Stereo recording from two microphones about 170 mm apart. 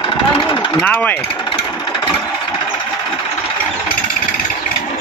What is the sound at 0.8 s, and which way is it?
Speech, 10° left (ahead or behind).